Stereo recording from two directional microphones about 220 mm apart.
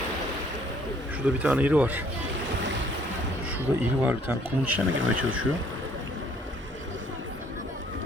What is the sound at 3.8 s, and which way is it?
Speech, 10° right (ahead or behind).